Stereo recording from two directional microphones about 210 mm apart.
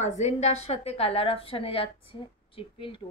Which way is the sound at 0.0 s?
35° left (ahead or behind).